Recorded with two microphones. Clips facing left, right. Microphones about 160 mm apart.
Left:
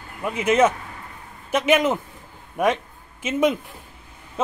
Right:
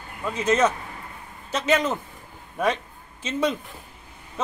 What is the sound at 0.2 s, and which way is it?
A man's voice, 10° left (ahead or behind).